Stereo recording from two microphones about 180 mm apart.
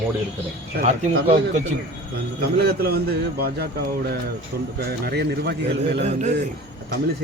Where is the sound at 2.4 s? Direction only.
60° right (ahead or behind).